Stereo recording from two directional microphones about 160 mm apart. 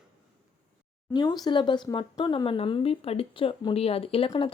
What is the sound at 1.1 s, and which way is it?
Speech, 25° left (ahead or behind).